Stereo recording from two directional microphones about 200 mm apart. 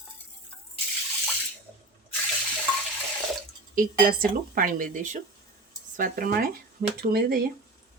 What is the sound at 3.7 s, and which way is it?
Speech, 45° right (ahead or behind).